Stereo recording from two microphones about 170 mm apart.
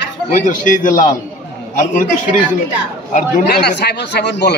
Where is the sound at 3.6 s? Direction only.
80° left.